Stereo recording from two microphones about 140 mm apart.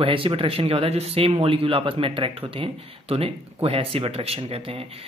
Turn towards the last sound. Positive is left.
turn(degrees=-45)  # may be behind; listen again after turning